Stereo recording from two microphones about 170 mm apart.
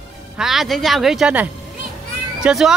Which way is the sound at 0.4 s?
Centre (ahead or behind).